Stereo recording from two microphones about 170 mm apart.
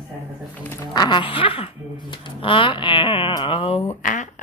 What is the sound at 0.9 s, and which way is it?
Speech, 25° left (ahead or behind).